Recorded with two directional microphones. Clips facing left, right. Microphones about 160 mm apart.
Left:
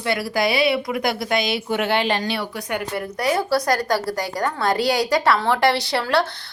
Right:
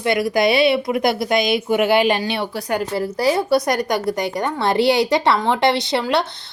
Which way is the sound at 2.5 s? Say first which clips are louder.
Right 4 dB; 35° right (ahead or behind).